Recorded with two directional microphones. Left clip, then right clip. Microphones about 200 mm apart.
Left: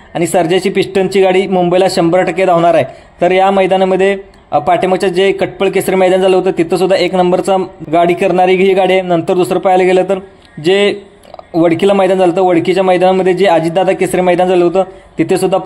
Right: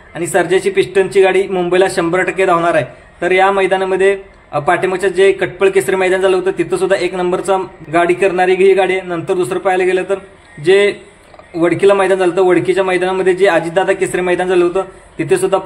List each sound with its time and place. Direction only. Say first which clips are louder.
0.1 s a man's voice: left 2 dB; 35° left (ahead or behind)